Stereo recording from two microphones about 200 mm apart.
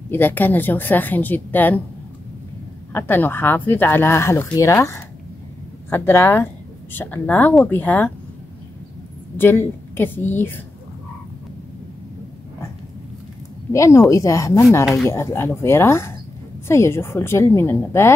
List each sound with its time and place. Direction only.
0.1 s speech: 10° left (ahead or behind)
2.9 s speech: 10° left (ahead or behind)
9.4 s speech: 10° left (ahead or behind)
13.7 s speech: 15° left (ahead or behind)